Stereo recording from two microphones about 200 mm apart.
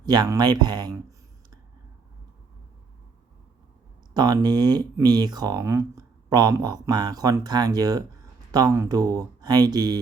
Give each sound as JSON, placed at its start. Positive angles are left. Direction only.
{"t": 0.0, "sound": "speech", "side_deg": -20}
{"t": 4.1, "sound": "speech", "side_deg": -20}